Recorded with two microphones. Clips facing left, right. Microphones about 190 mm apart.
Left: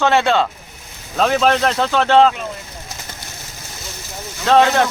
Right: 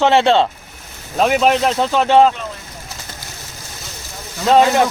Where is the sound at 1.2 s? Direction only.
10° right (ahead or behind).